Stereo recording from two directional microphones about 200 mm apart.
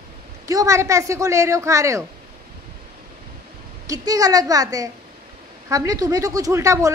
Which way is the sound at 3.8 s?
15° right (ahead or behind).